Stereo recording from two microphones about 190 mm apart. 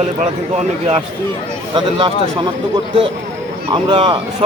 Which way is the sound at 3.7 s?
25° right (ahead or behind).